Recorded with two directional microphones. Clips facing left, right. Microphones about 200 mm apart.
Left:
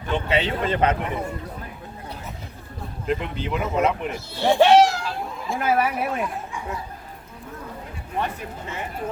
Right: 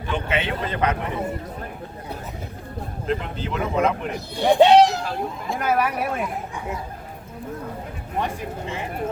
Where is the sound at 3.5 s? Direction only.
5° left (ahead or behind).